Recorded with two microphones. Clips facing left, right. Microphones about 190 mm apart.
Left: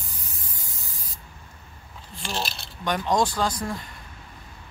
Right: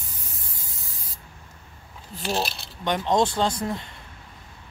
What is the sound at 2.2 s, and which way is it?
Speech, 40° right (ahead or behind).